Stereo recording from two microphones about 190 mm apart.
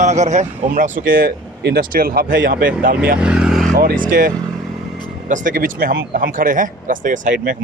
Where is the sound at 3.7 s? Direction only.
45° right (ahead or behind).